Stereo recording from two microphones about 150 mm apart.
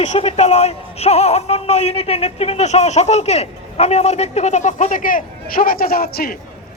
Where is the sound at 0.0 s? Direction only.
50° left (ahead or behind).